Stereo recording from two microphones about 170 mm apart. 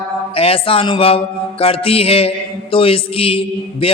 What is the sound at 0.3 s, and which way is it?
A man's voice, 35° left (ahead or behind).